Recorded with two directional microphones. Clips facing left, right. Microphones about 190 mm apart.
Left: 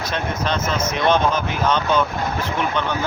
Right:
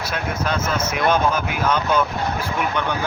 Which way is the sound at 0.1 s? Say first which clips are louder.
Left 1 dB; 10° right (ahead or behind).